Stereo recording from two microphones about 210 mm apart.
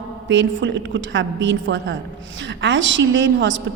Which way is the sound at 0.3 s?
60° right (ahead or behind).